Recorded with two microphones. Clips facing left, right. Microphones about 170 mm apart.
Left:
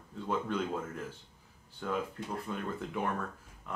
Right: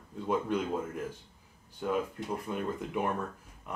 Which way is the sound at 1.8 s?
15° right (ahead or behind).